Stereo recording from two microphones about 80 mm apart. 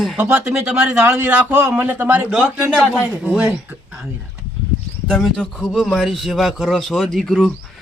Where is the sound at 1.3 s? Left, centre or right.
Centre.